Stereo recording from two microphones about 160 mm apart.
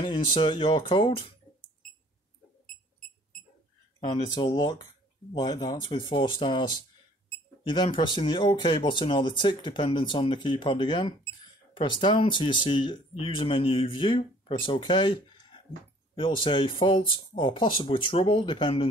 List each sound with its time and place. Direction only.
0.0 s speech: 30° left (ahead or behind)
4.1 s speech: 25° left (ahead or behind)
7.6 s speech: 30° left (ahead or behind)